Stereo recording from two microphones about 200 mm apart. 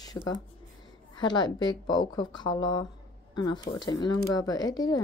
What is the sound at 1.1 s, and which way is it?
A woman's voice, 20° left (ahead or behind).